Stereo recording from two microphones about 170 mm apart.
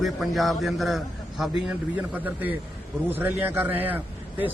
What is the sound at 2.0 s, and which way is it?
A man's voice, 10° right (ahead or behind).